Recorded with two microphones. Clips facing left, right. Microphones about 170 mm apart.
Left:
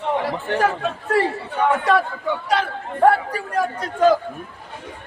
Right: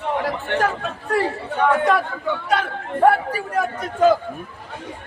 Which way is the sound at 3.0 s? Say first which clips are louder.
Even; 5° right (ahead or behind).